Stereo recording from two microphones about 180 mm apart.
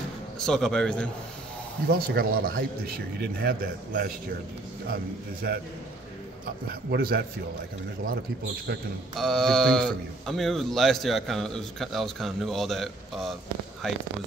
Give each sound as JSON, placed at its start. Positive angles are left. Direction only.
{"t": 0.4, "sound": "speech", "side_deg": 0}
{"t": 1.9, "sound": "speech", "side_deg": -60}
{"t": 6.7, "sound": "speech", "side_deg": -60}
{"t": 9.1, "sound": "speech", "side_deg": 0}